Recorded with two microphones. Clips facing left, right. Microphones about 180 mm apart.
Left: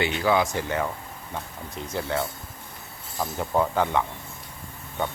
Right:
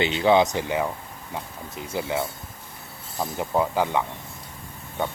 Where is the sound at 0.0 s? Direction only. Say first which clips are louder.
Right 4 dB; 20° right (ahead or behind).